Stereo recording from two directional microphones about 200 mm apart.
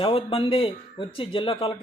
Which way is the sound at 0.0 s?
25° left (ahead or behind).